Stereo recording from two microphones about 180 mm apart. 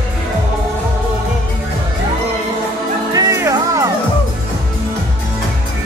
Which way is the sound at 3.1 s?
20° right (ahead or behind).